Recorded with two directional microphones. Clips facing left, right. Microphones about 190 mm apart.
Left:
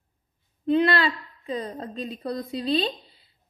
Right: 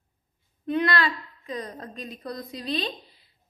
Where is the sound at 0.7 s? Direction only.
30° left (ahead or behind).